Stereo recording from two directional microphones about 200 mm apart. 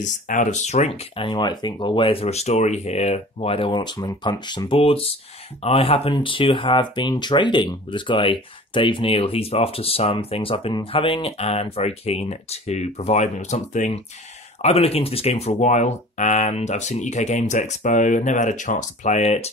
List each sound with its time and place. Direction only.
0.0 s speech: 40° left (ahead or behind)